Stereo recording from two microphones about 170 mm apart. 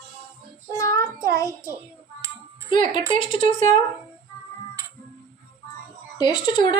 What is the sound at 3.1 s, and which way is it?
Speech, 30° left (ahead or behind).